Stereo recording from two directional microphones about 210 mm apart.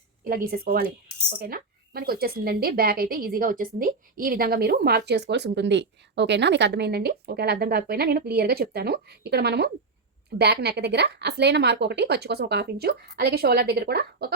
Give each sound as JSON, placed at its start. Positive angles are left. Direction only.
{"t": 0.3, "sound": "a woman's voice", "side_deg": -45}